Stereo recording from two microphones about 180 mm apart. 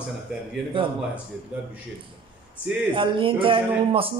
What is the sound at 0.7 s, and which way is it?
Speech, 30° right (ahead or behind).